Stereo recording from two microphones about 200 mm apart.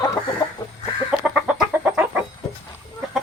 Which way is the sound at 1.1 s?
5° right (ahead or behind).